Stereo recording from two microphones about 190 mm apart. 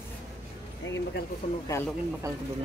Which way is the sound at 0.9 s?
75° left (ahead or behind).